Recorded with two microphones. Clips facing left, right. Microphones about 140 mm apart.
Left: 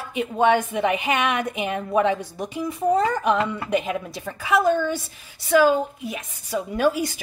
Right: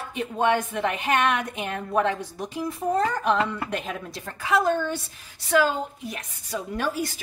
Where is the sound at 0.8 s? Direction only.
10° left (ahead or behind).